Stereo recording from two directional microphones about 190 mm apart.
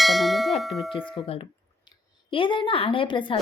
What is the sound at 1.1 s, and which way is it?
A woman's voice, 30° left (ahead or behind).